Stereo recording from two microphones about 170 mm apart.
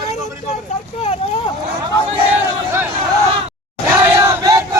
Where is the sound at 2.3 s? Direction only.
10° right (ahead or behind).